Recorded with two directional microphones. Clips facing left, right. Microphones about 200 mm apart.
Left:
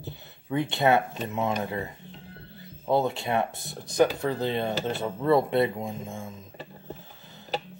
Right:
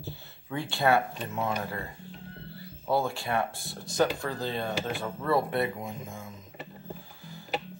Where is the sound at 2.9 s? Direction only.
20° left (ahead or behind).